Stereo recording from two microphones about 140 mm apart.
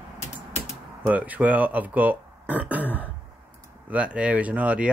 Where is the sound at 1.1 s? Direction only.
10° right (ahead or behind).